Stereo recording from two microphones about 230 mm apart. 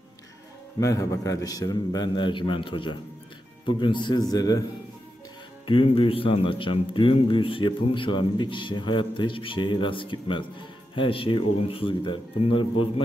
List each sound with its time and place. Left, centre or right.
0.7 s a man's voice: centre
5.7 s speech: left